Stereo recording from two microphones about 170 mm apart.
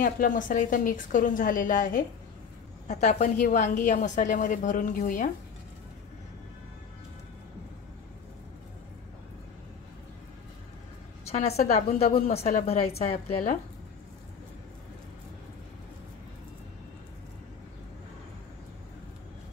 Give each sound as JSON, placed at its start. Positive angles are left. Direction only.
{"t": 0.0, "sound": "a woman's voice", "side_deg": 50}
{"t": 11.2, "sound": "a woman's voice", "side_deg": 40}